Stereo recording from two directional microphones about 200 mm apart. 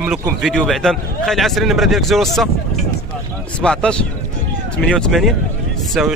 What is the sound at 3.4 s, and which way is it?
Speech, 5° left (ahead or behind).